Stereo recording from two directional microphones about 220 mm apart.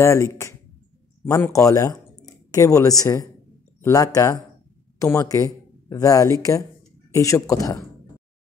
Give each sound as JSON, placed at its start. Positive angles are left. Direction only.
{"t": 0.0, "sound": "speech", "side_deg": 15}